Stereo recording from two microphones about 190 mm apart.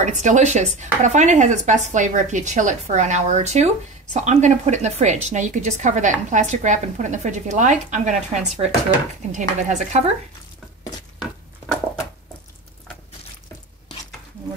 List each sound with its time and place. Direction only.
0.0 s speech: 40° right (ahead or behind)